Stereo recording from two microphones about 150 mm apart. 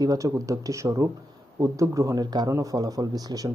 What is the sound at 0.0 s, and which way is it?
Speech, 25° right (ahead or behind).